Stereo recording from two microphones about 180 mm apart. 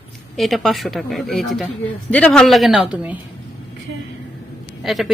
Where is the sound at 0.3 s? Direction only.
Centre (ahead or behind).